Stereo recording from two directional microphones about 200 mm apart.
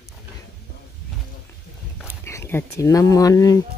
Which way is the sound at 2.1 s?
15° left (ahead or behind).